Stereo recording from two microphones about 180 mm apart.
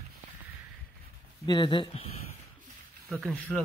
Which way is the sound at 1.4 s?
25° left (ahead or behind).